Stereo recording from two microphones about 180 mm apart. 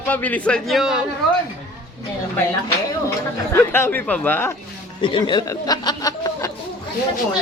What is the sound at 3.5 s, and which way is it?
A man's voice, 15° left (ahead or behind).